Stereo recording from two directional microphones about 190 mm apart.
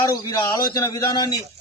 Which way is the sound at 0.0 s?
20° left (ahead or behind).